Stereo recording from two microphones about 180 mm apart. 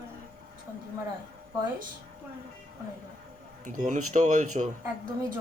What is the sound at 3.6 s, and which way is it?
A man's voice, 45° right (ahead or behind).